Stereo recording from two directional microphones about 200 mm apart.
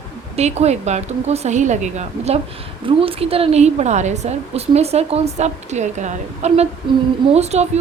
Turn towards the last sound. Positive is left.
turn(degrees=-35)  # may be behind; listen again after turning